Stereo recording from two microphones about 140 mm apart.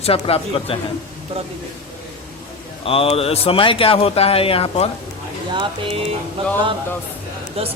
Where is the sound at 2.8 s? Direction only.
40° left (ahead or behind).